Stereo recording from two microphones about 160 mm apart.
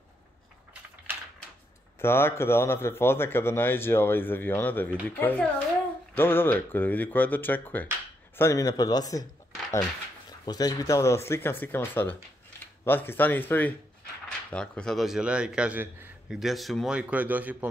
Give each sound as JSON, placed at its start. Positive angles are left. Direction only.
{"t": 2.0, "sound": "a man's voice", "side_deg": 15}
{"t": 16.3, "sound": "a man's voice", "side_deg": 0}